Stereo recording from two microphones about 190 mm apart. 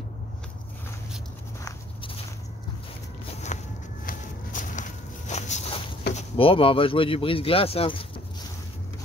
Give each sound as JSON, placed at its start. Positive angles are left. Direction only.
{"t": 3.5, "sound": "a sound", "side_deg": 35}
{"t": 4.0, "sound": "walk", "side_deg": 45}
{"t": 6.1, "sound": "speech", "side_deg": 30}